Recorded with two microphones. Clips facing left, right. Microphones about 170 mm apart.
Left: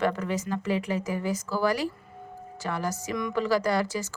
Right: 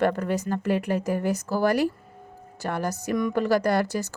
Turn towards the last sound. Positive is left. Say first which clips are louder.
# right 3 dB
turn(degrees=-60)  # may be behind; listen again after turning